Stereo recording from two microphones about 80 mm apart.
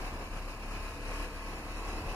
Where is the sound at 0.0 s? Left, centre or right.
Left.